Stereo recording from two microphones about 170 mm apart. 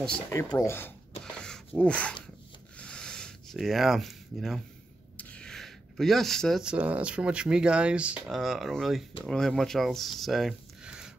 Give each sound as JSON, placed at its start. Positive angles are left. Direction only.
{"t": 0.3, "sound": "speech", "side_deg": 15}
{"t": 1.2, "sound": "a sound", "side_deg": 5}
{"t": 5.1, "sound": "speech", "side_deg": 5}